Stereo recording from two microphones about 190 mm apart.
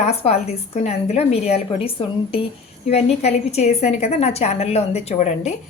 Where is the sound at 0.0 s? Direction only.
35° left (ahead or behind).